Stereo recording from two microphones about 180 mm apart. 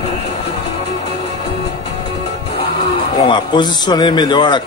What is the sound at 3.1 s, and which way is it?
A man's voice, 25° left (ahead or behind).